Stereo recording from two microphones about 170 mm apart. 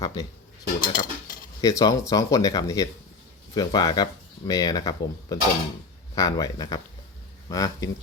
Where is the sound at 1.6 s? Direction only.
20° left (ahead or behind).